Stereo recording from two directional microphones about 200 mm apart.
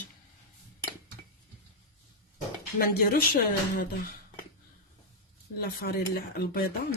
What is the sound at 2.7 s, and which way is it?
A woman's voice, 50° left (ahead or behind).